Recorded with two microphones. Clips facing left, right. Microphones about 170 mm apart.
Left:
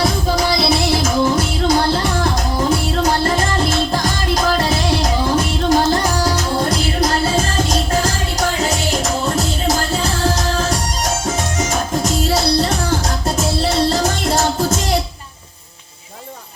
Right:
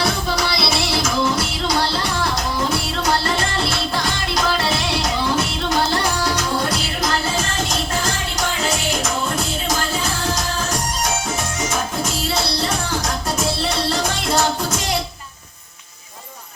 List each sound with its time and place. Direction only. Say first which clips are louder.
0.3 s music: left 5 dB; 45° left (ahead or behind)
11.7 s music: left 4 dB; 40° left (ahead or behind)